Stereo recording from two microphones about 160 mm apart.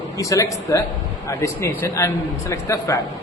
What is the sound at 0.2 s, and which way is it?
A woman's voice, 20° left (ahead or behind).